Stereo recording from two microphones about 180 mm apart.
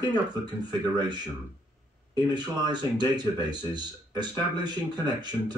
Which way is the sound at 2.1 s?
25° right (ahead or behind).